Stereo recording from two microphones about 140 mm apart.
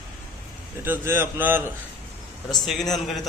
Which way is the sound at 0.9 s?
20° right (ahead or behind).